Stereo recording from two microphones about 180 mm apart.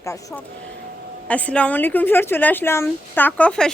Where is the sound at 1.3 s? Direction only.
5° left (ahead or behind).